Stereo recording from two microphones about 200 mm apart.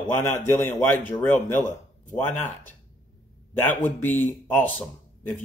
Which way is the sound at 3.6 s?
10° left (ahead or behind).